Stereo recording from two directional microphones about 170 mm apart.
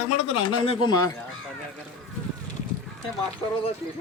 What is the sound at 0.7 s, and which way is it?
Speech, 25° left (ahead or behind).